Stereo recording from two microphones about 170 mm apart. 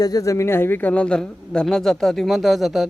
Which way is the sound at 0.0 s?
20° left (ahead or behind).